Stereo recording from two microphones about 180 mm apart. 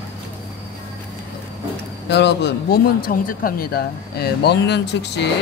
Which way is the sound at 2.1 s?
70° left (ahead or behind).